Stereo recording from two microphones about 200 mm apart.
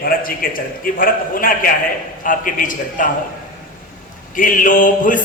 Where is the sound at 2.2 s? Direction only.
40° left (ahead or behind).